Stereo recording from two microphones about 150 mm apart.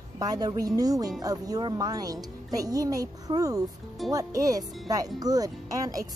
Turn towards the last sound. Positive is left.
turn(degrees=-25)  # may be behind; listen again after turning